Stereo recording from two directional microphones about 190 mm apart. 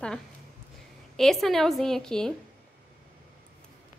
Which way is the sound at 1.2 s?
Centre (ahead or behind).